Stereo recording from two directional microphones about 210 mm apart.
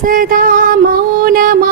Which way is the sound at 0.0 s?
40° right (ahead or behind).